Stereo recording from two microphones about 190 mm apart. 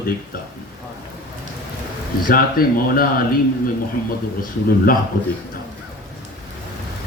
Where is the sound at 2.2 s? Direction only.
50° left (ahead or behind).